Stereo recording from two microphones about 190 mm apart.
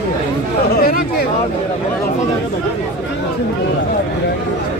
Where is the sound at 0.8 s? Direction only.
50° left (ahead or behind).